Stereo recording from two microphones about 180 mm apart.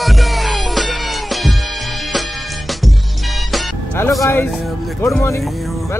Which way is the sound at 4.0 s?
15° left (ahead or behind).